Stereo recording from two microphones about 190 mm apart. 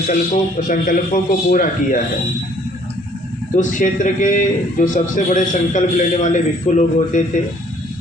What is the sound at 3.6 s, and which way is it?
A man's voice, 40° left (ahead or behind).